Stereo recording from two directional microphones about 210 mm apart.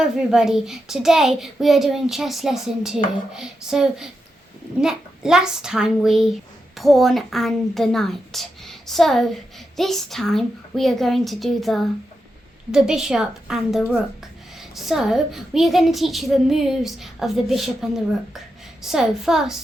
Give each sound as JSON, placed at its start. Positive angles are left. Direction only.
{"t": 0.0, "sound": "a woman's voice", "side_deg": -5}